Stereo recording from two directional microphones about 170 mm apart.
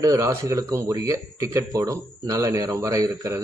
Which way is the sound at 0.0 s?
20° right (ahead or behind).